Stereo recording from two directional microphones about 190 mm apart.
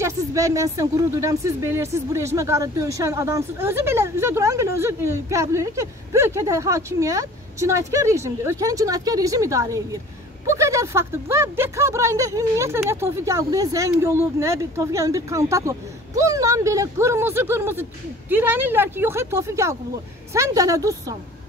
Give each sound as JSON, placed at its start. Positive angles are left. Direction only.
{"t": 0.0, "sound": "speech", "side_deg": -15}